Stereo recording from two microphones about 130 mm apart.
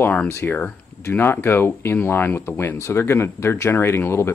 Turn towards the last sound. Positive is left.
turn(degrees=20)  # may be behind; listen again after turning